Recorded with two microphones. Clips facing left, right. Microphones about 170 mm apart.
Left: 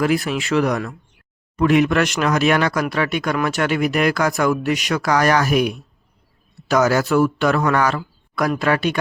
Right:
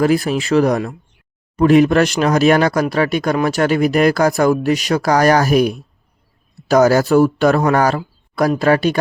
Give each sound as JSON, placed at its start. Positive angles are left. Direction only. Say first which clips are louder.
{"t": 0.0, "sound": "speech", "louder": "right 4 dB", "side_deg": -35}